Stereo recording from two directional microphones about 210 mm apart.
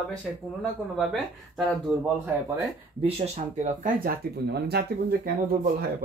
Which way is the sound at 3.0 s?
30° right (ahead or behind).